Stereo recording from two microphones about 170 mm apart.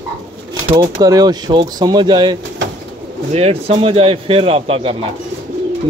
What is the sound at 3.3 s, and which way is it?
Speech, 35° right (ahead or behind).